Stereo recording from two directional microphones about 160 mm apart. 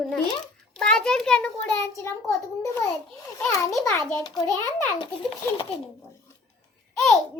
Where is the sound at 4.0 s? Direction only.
20° left (ahead or behind).